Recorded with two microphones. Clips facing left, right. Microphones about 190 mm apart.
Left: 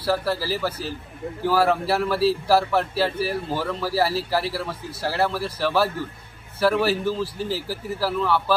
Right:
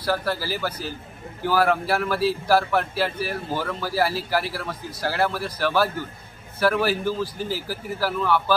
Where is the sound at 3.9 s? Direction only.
30° left (ahead or behind).